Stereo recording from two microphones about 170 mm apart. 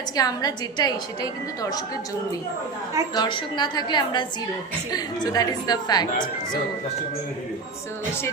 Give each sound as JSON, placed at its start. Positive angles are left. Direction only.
{"t": 0.2, "sound": "a woman's voice", "side_deg": 20}
{"t": 3.2, "sound": "a woman's voice", "side_deg": 30}